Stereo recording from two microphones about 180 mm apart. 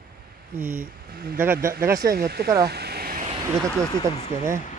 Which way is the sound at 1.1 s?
55° right (ahead or behind).